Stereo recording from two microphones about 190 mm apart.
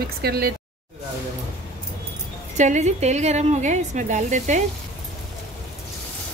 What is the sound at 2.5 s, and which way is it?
A woman's voice, 40° right (ahead or behind).